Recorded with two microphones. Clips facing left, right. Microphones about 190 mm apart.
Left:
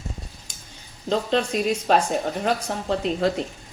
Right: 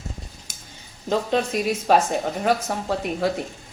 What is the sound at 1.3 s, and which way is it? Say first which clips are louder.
A woman's voice: left 2 dB; 5° right (ahead or behind).